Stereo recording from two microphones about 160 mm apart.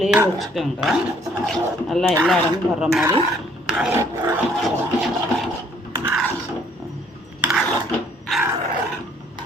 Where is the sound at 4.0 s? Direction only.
20° right (ahead or behind).